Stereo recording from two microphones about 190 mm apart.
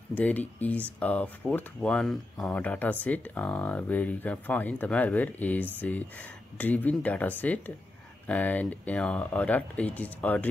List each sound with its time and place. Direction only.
0.1 s speech: 10° left (ahead or behind)